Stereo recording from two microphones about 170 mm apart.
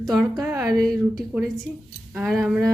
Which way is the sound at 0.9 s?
10° right (ahead or behind).